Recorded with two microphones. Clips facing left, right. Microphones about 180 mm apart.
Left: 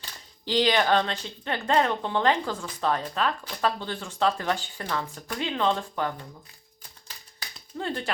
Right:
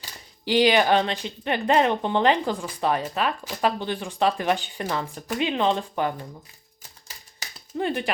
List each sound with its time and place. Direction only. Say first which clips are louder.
0.0 s speech: right 4 dB; 15° right (ahead or behind)
7.8 s speech: right 5 dB; 15° right (ahead or behind)